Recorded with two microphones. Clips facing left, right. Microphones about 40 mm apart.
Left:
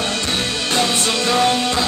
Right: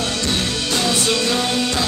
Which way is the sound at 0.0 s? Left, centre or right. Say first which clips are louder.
Even; left.